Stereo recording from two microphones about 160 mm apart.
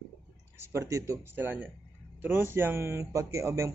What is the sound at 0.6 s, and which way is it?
Speech, 15° right (ahead or behind).